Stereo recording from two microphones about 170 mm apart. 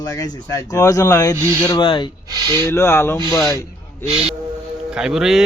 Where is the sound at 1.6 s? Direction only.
25° left (ahead or behind).